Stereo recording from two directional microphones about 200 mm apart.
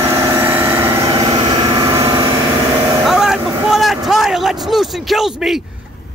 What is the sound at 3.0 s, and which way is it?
Vehicle, centre (ahead or behind).